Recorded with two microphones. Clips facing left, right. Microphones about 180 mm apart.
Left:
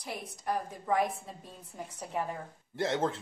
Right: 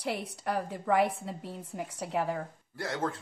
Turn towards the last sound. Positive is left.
turn(degrees=20)  # may be behind; listen again after turning